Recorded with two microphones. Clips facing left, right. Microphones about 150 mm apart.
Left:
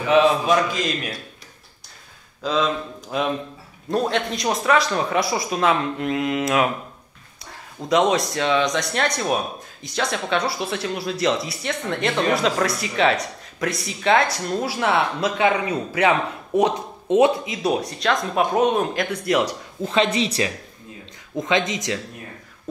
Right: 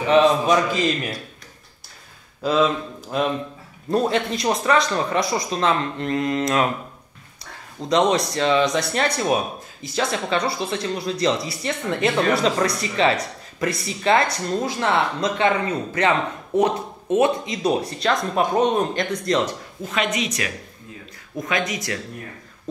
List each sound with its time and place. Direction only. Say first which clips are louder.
0.1 s speech: right 1 dB; centre (ahead or behind)
2.4 s speech: right 3 dB; 5° right (ahead or behind)
7.8 s speech: even; centre (ahead or behind)
17.5 s speech: right 1 dB; centre (ahead or behind)
19.8 s speech: left 4 dB; 30° left (ahead or behind)